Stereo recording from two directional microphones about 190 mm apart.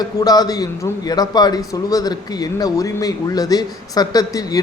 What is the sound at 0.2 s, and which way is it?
A man's voice, 20° left (ahead or behind).